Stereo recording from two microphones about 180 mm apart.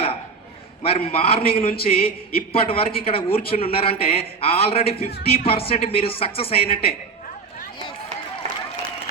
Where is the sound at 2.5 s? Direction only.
30° left (ahead or behind).